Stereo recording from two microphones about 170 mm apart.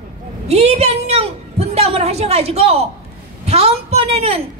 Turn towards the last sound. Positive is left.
turn(degrees=-35)  # may be behind; listen again after turning